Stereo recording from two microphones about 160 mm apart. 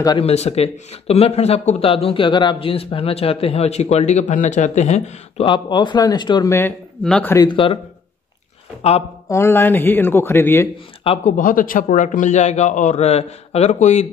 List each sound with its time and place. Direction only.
0.2 s speech: 40° left (ahead or behind)
5.4 s speech: 30° left (ahead or behind)
7.0 s speech: 5° left (ahead or behind)
7.3 s speech: 30° left (ahead or behind)
9.3 s speech: 15° left (ahead or behind)
11.2 s a man's voice: 55° left (ahead or behind)